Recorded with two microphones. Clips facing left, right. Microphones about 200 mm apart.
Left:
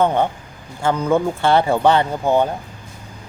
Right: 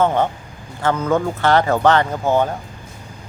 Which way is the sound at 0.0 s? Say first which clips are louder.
Even; 15° left (ahead or behind).